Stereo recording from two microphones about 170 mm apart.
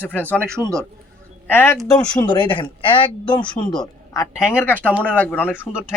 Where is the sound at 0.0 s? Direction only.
10° left (ahead or behind); by 3.8 s 25° left (ahead or behind).